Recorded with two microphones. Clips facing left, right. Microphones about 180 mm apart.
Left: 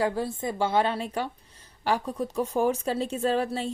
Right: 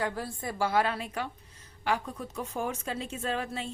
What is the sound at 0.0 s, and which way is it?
A woman's voice, 25° left (ahead or behind).